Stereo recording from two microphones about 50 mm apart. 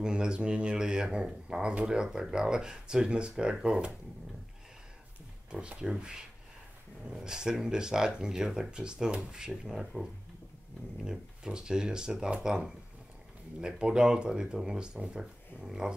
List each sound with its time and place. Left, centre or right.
0.0 s speech: centre
5.5 s speech: right
11.1 s speech: centre